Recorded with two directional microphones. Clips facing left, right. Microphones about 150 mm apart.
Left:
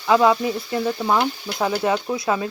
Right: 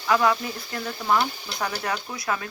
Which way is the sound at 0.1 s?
20° left (ahead or behind).